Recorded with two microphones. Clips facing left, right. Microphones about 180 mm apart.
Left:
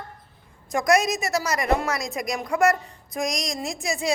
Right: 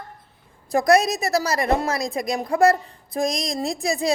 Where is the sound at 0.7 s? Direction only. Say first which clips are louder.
Right 3 dB; 35° right (ahead or behind).